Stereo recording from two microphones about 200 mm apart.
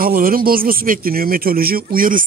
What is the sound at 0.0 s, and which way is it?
Speech, 45° right (ahead or behind).